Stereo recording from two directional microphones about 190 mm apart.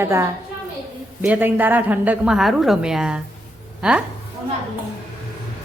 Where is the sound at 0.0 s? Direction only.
15° right (ahead or behind).